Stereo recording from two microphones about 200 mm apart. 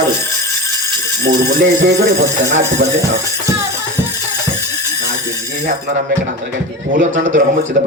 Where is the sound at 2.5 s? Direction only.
35° right (ahead or behind).